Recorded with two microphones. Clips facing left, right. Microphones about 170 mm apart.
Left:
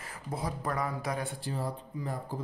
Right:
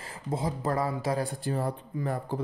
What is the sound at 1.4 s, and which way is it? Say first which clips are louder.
Speech: right 5 dB; 60° right (ahead or behind).